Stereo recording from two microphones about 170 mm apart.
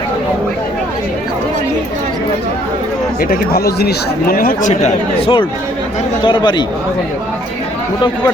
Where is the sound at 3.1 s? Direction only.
65° left (ahead or behind).